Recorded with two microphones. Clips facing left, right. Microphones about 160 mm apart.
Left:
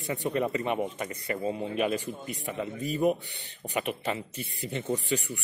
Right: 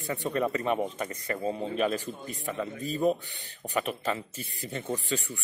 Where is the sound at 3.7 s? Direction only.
15° left (ahead or behind).